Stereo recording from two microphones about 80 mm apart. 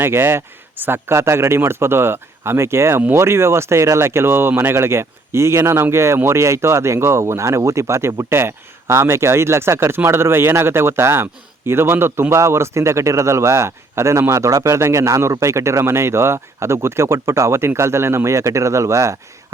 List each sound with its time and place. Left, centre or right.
0.0 s speech: right